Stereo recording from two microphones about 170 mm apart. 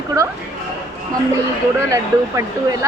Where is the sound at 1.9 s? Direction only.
20° right (ahead or behind).